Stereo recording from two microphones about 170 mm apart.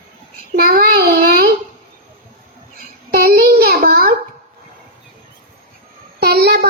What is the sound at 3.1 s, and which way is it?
Child singing, 60° right (ahead or behind).